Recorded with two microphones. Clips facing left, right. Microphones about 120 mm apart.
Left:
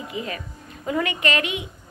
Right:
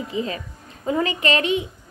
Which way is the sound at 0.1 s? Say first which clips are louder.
Right 4 dB; 30° right (ahead or behind).